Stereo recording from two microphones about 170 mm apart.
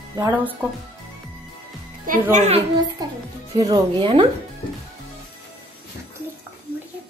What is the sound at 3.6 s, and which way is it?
Speech, 25° right (ahead or behind).